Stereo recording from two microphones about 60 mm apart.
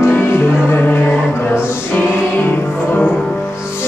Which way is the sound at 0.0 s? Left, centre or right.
Left.